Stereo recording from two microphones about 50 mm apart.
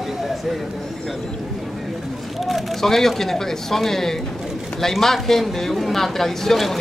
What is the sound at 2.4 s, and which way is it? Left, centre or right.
Speech, centre.